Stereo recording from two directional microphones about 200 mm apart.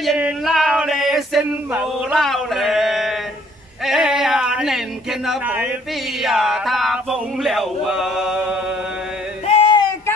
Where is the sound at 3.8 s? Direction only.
Centre (ahead or behind).